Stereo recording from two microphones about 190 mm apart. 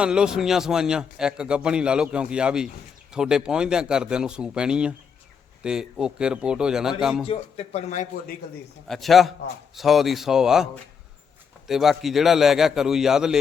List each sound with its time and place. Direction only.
0.0 s a man's voice: 5° right (ahead or behind)
7.3 s a man's voice: 35° left (ahead or behind)
8.9 s a man's voice: centre (ahead or behind)
11.7 s a man's voice: centre (ahead or behind)